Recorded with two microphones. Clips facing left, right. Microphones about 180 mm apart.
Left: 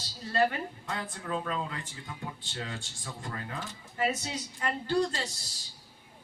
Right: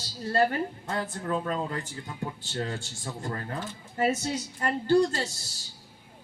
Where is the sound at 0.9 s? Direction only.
45° right (ahead or behind).